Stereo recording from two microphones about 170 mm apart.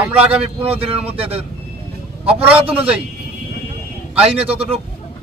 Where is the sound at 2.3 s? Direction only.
10° right (ahead or behind).